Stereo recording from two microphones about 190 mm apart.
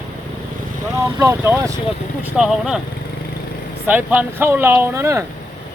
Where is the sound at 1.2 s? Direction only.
15° right (ahead or behind).